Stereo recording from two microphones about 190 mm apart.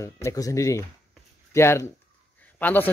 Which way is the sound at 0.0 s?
15° left (ahead or behind).